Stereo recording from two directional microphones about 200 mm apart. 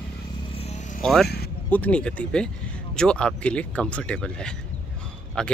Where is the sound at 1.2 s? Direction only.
55° left (ahead or behind).